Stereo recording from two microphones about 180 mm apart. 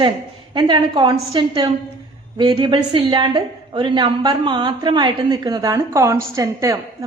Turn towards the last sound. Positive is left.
turn(degrees=-15)  # may be behind; listen again after turning